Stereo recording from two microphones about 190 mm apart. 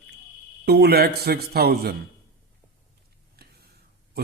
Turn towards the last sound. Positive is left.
turn(degrees=-55)  # may be behind; listen again after turning